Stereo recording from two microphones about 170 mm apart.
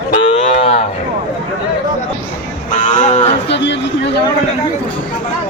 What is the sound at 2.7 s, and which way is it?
Moo, 45° left (ahead or behind).